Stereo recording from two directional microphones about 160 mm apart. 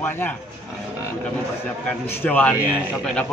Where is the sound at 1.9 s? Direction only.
10° left (ahead or behind).